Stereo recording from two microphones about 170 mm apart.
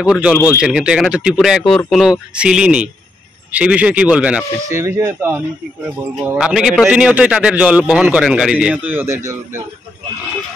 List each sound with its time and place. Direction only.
0.0 s a man's voice: 5° right (ahead or behind)
4.6 s a man's voice: 15° right (ahead or behind)